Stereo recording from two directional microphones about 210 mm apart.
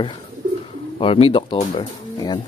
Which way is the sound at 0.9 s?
25° left (ahead or behind).